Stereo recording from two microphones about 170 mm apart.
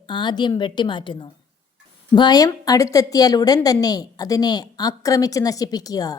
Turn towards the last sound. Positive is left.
turn(degrees=20)  # may be behind; listen again after turning